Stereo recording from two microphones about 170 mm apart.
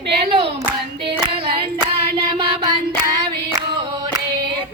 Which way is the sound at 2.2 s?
25° right (ahead or behind).